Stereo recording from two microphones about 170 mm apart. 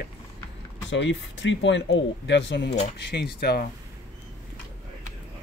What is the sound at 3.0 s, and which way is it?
Speech, 80° left.